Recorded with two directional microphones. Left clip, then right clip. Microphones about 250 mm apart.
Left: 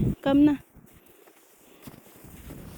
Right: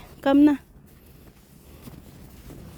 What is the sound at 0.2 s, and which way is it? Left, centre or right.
Speech, right.